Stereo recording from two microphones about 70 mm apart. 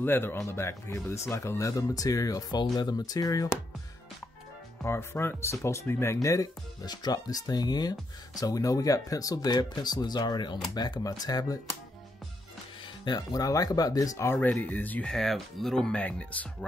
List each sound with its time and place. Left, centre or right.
0.0 s speech: left
1.6 s speech: left
2.5 s speech: left
4.8 s speech: left
6.2 s speech: left
13.0 s speech: left
14.2 s speech: left
15.0 s speech: centre
16.0 s speech: centre